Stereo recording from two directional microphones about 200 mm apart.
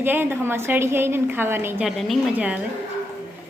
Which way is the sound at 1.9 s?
Centre (ahead or behind).